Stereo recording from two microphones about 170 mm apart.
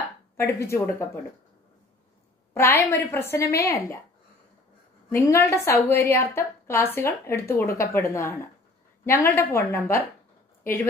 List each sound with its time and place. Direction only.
0.4 s a woman's voice: 15° left (ahead or behind)
2.5 s a woman's voice: 15° left (ahead or behind)
5.1 s a woman's voice: 15° left (ahead or behind)